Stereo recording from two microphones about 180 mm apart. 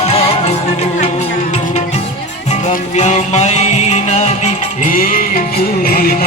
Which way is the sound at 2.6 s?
40° left (ahead or behind).